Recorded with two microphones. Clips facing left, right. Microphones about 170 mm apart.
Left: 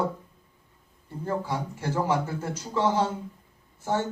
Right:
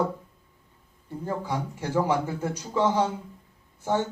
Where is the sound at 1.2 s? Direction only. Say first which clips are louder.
Left 1 dB; 15° right (ahead or behind).